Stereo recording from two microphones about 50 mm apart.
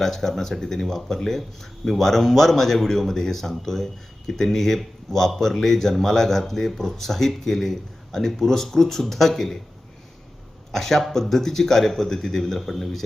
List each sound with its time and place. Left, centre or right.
0.0 s speech: centre
10.7 s speech: centre